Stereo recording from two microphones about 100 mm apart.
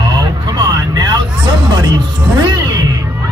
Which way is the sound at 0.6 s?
45° right (ahead or behind).